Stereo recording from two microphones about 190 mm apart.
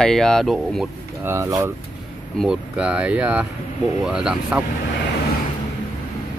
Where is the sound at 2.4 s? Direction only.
5° right (ahead or behind).